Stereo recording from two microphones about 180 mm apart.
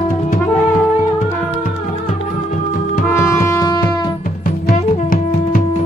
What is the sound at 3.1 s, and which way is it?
Music, 15° left (ahead or behind).